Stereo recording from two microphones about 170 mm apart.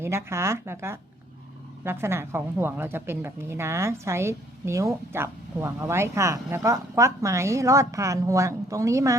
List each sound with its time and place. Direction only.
0.0 s a woman's voice: 15° right (ahead or behind)